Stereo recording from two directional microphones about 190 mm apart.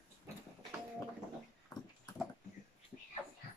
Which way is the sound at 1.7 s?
20° left (ahead or behind).